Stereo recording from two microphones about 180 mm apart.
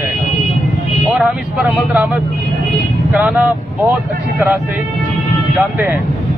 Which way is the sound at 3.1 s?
5° right (ahead or behind).